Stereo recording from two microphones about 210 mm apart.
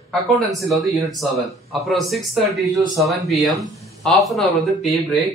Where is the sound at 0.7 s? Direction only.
Centre (ahead or behind).